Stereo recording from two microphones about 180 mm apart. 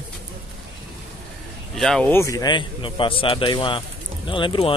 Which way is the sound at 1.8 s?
5° left (ahead or behind).